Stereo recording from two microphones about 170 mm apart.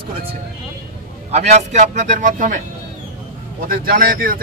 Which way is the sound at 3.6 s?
60° right (ahead or behind).